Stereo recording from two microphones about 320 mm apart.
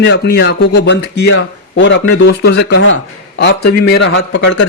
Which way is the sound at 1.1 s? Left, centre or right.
Left.